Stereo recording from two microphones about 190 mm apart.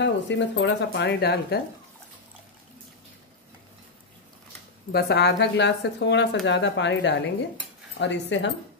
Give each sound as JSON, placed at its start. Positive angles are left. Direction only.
{"t": 0.0, "sound": "speech", "side_deg": 75}
{"t": 4.9, "sound": "a woman's voice", "side_deg": 60}